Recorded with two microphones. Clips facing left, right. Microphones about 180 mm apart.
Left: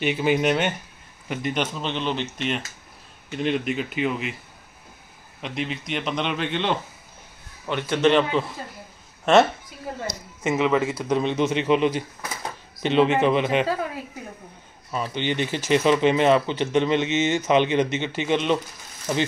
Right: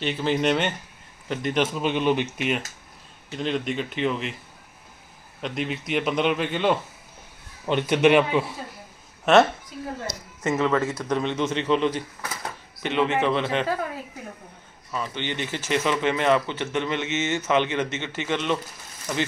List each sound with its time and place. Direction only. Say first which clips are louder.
0.0 s a man's voice: left 2 dB; 10° left (ahead or behind); by 2.6 s 5° right (ahead or behind)
3.3 s a man's voice: left 2 dB; 5° left (ahead or behind)
5.4 s a man's voice: right 1 dB; centre (ahead or behind)
7.6 s a man's voice: right 2 dB; 20° right (ahead or behind); by 9.5 s centre (ahead or behind)
10.4 s speech: left 1 dB; 10° left (ahead or behind)
14.9 s speech: left 4 dB; 15° left (ahead or behind)